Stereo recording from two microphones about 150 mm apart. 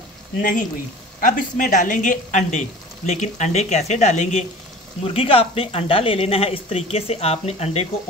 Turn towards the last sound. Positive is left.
turn(degrees=45)  # may be behind; listen again after turning